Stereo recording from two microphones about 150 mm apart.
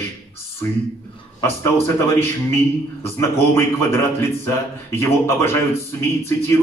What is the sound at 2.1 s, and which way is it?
A man's voice, 15° left (ahead or behind).